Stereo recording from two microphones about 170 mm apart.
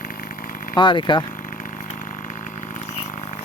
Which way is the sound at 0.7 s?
25° left (ahead or behind).